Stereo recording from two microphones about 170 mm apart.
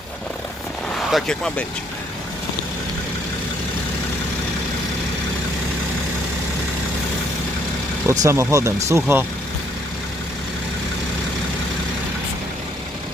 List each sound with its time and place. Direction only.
0.9 s speech: 5° left (ahead or behind)
8.0 s speech: 20° right (ahead or behind)